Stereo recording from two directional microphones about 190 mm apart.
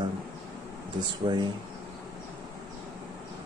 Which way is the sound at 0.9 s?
25° right (ahead or behind).